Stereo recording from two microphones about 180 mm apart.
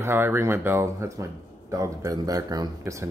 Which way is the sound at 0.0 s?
10° right (ahead or behind).